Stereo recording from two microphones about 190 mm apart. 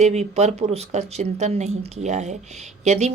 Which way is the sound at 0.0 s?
35° right (ahead or behind).